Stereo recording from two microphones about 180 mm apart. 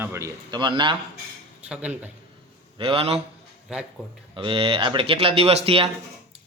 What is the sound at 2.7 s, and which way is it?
Speech, 30° right (ahead or behind).